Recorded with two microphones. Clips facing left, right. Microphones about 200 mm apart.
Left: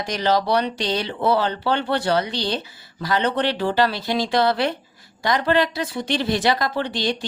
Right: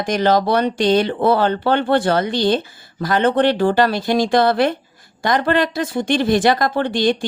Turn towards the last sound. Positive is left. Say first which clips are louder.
# right 6 dB
turn(degrees=-50)  # may be behind; listen again after turning